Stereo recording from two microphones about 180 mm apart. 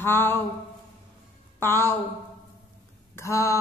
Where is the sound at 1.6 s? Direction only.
15° left (ahead or behind).